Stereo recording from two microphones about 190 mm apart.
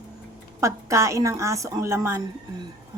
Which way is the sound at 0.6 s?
15° right (ahead or behind).